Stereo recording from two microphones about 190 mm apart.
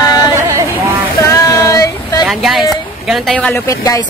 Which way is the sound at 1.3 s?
15° left (ahead or behind).